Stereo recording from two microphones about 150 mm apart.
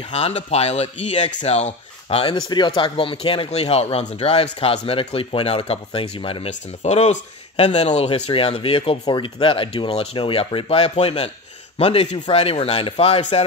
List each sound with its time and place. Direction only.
0.1 s speech: 45° left (ahead or behind)